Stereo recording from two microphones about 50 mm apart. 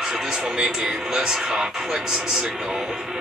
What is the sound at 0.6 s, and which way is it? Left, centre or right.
Speech, centre.